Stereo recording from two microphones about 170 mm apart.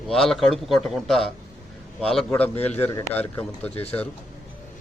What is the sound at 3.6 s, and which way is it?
Speech, 35° left (ahead or behind).